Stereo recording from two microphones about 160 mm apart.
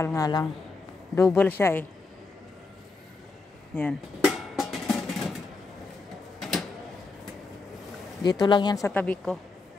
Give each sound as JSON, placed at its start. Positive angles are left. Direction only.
{"t": 0.0, "sound": "speech", "side_deg": 20}
{"t": 3.7, "sound": "speech", "side_deg": 15}
{"t": 4.2, "sound": "music", "side_deg": 0}
{"t": 8.2, "sound": "speech", "side_deg": 25}
{"t": 9.0, "sound": "speech", "side_deg": 5}